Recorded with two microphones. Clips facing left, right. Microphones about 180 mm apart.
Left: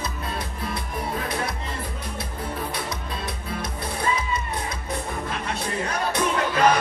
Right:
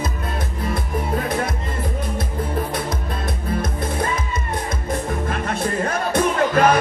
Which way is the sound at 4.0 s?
45° right (ahead or behind).